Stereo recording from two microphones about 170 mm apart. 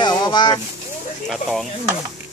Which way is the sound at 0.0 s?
25° left (ahead or behind).